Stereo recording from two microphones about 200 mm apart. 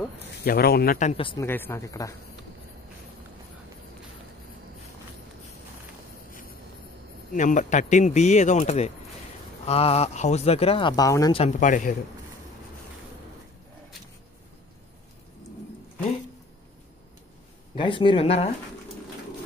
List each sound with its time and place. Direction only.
0.4 s speech: 50° left (ahead or behind); by 1.4 s 25° left (ahead or behind)
1.4 s speech: 10° left (ahead or behind)
7.3 s speech: 40° left (ahead or behind); by 11.3 s 15° left (ahead or behind)
11.3 s speech: 35° left (ahead or behind)
17.7 s speech: 25° left (ahead or behind)